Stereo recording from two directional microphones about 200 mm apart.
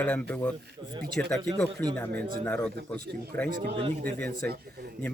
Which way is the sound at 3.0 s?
50° right (ahead or behind).